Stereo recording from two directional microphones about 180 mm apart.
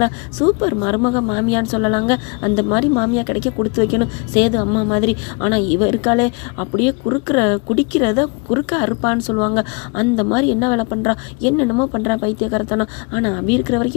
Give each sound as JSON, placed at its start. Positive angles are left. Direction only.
{"t": 0.0, "sound": "a woman's voice", "side_deg": 15}